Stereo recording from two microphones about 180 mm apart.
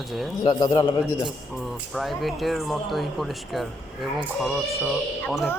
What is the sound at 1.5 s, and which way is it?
Speech, centre (ahead or behind).